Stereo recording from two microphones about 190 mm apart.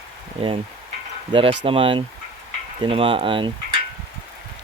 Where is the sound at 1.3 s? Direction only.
30° right (ahead or behind).